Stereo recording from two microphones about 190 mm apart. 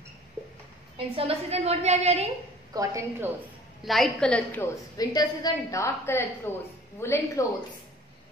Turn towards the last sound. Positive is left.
turn(degrees=15)  # may be behind; listen again after turning